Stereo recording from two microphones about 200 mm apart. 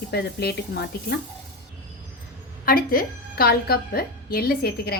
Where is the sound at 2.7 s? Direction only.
45° left (ahead or behind).